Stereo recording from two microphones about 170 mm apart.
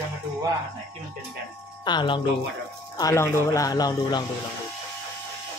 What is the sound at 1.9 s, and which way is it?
Speech, 25° left (ahead or behind).